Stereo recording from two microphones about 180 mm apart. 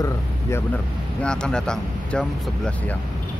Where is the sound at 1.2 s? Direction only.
5° left (ahead or behind).